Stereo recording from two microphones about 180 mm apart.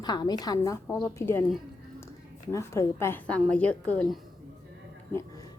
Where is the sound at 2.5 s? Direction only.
15° left (ahead or behind).